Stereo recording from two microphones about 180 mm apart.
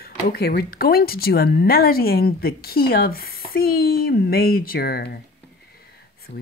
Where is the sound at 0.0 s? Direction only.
60° left (ahead or behind).